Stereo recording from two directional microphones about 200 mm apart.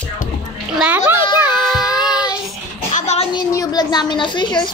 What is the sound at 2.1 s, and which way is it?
Child singing, 5° right (ahead or behind).